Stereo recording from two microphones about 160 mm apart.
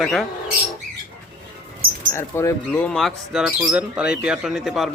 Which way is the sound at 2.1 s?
15° left (ahead or behind).